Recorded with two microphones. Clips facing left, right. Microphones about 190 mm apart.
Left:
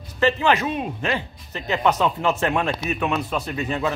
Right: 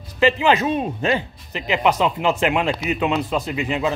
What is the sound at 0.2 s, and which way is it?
Speech, 20° right (ahead or behind).